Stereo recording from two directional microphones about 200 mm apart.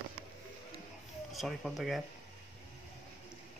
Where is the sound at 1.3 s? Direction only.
Centre (ahead or behind).